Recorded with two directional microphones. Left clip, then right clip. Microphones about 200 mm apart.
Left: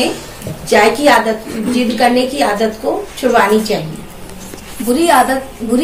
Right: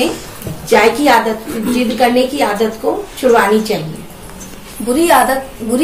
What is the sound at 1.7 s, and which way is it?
Speech, centre (ahead or behind).